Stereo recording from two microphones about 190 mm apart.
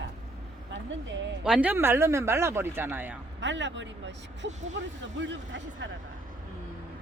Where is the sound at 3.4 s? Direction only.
70° right (ahead or behind).